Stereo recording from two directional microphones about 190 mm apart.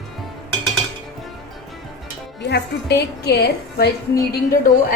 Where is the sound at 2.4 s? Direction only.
60° left (ahead or behind).